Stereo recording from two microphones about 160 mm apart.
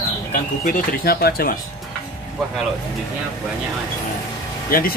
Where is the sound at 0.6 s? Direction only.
65° left (ahead or behind).